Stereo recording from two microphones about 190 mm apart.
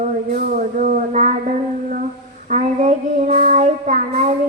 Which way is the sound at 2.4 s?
40° right (ahead or behind).